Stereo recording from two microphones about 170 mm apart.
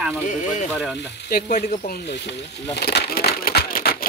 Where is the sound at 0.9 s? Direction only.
65° left (ahead or behind).